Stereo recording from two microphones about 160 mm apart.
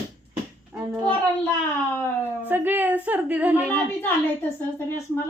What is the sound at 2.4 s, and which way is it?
Speech, 10° right (ahead or behind).